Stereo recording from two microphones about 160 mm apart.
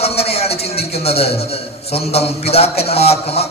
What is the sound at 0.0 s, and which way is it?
A man's voice, 40° left (ahead or behind).